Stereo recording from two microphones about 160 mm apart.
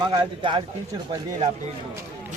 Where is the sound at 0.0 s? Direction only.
30° right (ahead or behind).